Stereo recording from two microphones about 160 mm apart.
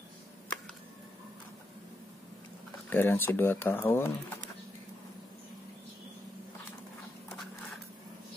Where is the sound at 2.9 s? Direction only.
10° left (ahead or behind).